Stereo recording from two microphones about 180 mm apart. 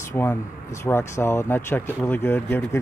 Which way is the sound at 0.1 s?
15° left (ahead or behind).